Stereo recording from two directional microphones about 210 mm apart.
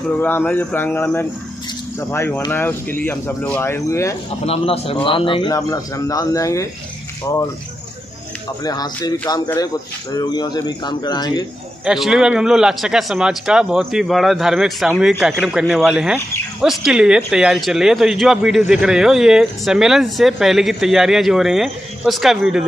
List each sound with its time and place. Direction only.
0.2 s speech: 10° left (ahead or behind)
4.5 s a man's voice: 25° left (ahead or behind)
8.6 s a man's voice: 20° left (ahead or behind)
11.8 s a man's voice: centre (ahead or behind)